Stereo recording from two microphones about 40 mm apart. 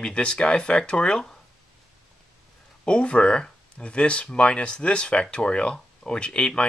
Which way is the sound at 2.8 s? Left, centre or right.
Left.